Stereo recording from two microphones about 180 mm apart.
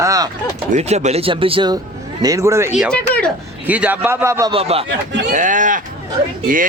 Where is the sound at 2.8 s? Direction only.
5° left (ahead or behind).